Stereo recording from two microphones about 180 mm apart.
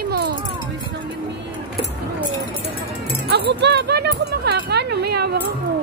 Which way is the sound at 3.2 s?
65° right (ahead or behind).